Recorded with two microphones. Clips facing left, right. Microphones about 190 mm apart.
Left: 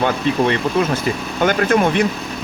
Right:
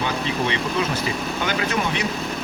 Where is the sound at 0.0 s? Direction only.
55° left (ahead or behind).